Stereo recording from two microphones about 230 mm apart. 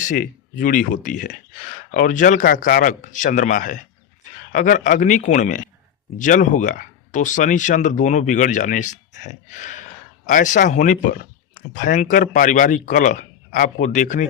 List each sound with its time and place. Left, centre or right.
0.0 s speech: left